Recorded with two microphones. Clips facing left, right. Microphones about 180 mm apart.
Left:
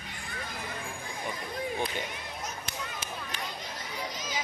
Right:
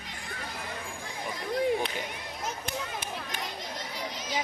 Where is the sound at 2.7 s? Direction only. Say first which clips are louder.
Right 4 dB; 55° right (ahead or behind).